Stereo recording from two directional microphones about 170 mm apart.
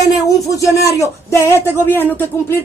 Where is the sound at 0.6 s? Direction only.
20° left (ahead or behind).